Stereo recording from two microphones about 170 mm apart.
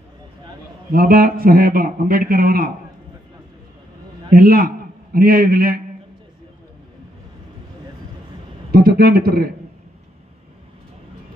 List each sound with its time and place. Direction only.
0.9 s a man's voice: 60° right (ahead or behind)
4.3 s a man's voice: 60° right (ahead or behind)
8.7 s a man's voice: 65° right (ahead or behind)